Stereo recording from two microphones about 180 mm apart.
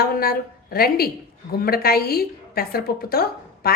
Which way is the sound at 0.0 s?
55° left (ahead or behind).